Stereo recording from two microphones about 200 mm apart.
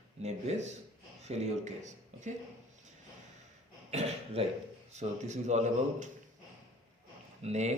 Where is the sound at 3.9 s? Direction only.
35° right (ahead or behind).